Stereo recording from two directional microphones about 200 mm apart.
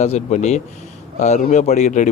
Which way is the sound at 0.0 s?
35° left (ahead or behind).